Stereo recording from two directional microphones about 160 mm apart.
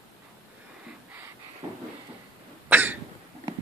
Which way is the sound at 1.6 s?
30° right (ahead or behind).